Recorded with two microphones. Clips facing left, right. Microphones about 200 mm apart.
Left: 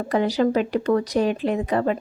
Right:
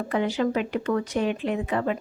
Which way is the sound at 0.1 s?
35° left (ahead or behind).